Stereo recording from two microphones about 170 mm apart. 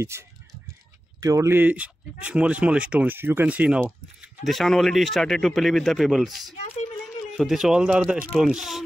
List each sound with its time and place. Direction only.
0.0 s speech: 15° right (ahead or behind); by 6.5 s centre (ahead or behind)
6.5 s speech: 40° left (ahead or behind)
7.3 s speech: centre (ahead or behind)